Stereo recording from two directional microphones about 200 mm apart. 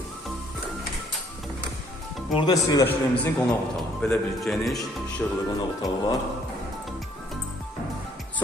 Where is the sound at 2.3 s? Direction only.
25° left (ahead or behind).